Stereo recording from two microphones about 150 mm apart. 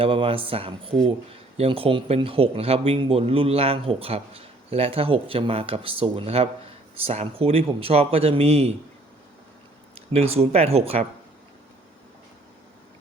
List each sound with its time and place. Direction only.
0.0 s speech: 35° right (ahead or behind)
9.9 s speech: 40° right (ahead or behind)